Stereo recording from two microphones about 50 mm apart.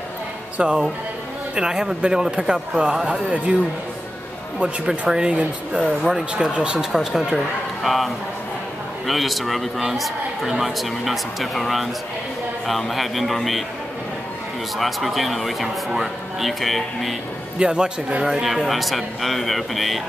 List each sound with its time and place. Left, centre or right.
0.6 s a man's voice: right
4.6 s a man's voice: centre
14.8 s a man's voice: centre
17.6 s speech: centre
18.5 s a man's voice: centre